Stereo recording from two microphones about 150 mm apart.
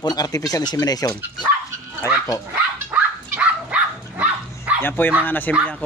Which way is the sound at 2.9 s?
10° right (ahead or behind).